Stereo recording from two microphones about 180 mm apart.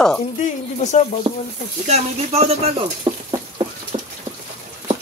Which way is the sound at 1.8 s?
40° right (ahead or behind).